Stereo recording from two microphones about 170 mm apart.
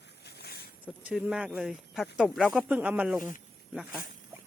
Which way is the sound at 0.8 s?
10° right (ahead or behind).